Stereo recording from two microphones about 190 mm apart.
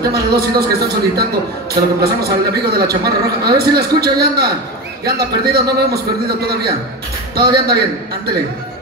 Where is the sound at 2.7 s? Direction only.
55° right (ahead or behind).